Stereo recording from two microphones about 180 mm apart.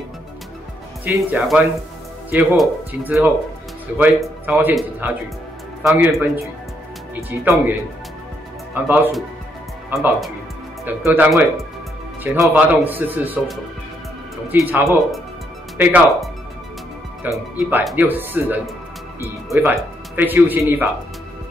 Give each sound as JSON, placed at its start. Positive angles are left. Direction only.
{"t": 1.0, "sound": "speech", "side_deg": -5}
{"t": 8.8, "sound": "speech", "side_deg": -10}
{"t": 11.1, "sound": "speech", "side_deg": -10}
{"t": 14.5, "sound": "speech", "side_deg": -10}
{"t": 14.9, "sound": "speech", "side_deg": 0}